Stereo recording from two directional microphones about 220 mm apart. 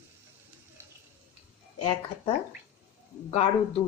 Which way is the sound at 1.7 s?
25° left (ahead or behind).